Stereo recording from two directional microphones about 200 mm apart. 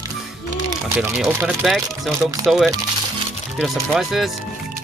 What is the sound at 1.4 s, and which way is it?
Speech, centre (ahead or behind).